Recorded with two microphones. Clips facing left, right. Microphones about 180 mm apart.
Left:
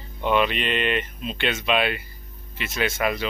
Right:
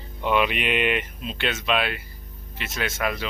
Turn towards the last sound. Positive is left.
turn(degrees=0)  # may be behind; listen again after turning